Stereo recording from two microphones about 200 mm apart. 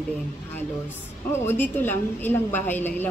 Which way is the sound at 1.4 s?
10° left (ahead or behind).